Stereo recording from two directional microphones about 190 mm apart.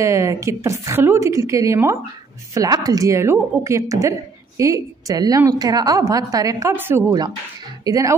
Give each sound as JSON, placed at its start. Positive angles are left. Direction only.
{"t": 0.0, "sound": "a woman's voice", "side_deg": -15}